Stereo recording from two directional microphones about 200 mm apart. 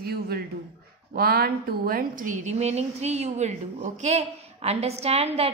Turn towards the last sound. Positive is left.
turn(degrees=-30)  # may be behind; listen again after turning